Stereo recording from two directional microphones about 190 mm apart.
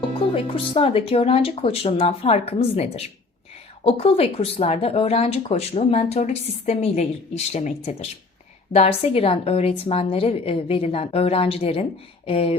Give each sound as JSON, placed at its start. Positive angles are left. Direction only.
{"t": 0.2, "sound": "speech", "side_deg": 30}